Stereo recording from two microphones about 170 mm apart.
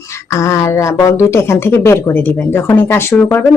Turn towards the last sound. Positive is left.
turn(degrees=15)  # may be behind; listen again after turning